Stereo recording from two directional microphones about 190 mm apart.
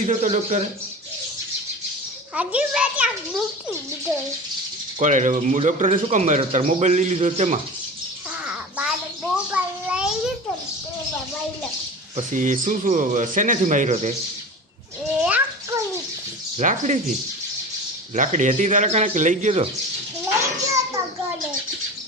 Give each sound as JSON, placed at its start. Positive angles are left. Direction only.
{"t": 0.0, "sound": "speech", "side_deg": -40}
{"t": 2.3, "sound": "a child's voice", "side_deg": -5}
{"t": 4.9, "sound": "speech", "side_deg": -40}
{"t": 8.4, "sound": "a sound", "side_deg": -5}
{"t": 12.1, "sound": "speech", "side_deg": -40}
{"t": 15.2, "sound": "a sound", "side_deg": -10}
{"t": 16.6, "sound": "speech", "side_deg": -40}
{"t": 18.1, "sound": "speech", "side_deg": -40}
{"t": 20.4, "sound": "children playing", "side_deg": -15}